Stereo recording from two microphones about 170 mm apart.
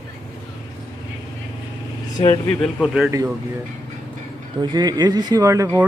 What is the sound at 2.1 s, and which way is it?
Speech, 25° left (ahead or behind).